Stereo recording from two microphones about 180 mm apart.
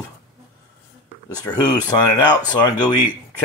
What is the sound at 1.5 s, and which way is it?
Speech, 20° left (ahead or behind).